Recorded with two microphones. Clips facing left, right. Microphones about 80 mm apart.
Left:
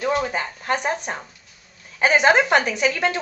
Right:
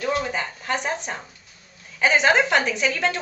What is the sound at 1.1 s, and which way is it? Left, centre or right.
Speech, left.